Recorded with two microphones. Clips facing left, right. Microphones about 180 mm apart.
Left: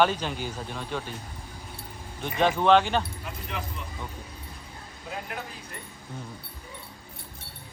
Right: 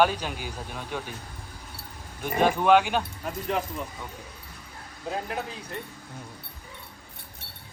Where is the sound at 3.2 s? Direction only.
45° right (ahead or behind).